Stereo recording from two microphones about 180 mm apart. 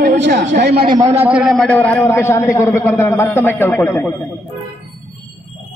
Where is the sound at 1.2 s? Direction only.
5° right (ahead or behind); by 4.1 s 10° left (ahead or behind).